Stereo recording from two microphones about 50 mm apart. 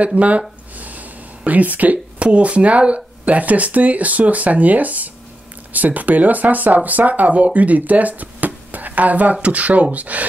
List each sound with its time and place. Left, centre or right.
0.0 s speech: right